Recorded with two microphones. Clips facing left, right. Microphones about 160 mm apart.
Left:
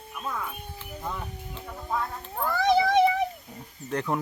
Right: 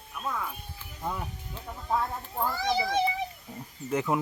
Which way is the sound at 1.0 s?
5° right (ahead or behind).